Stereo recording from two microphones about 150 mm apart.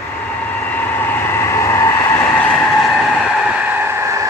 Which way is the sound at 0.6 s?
10° left (ahead or behind).